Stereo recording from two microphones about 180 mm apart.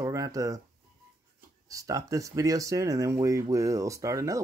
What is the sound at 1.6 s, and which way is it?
Speech, 20° right (ahead or behind).